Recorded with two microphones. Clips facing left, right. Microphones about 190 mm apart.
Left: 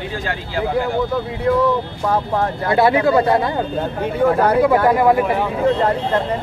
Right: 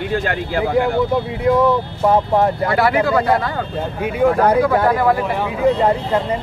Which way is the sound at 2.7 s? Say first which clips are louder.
Left 6 dB; 25° left (ahead or behind).